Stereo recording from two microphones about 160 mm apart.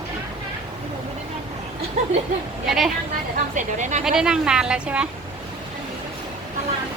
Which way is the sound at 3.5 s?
50° right (ahead or behind).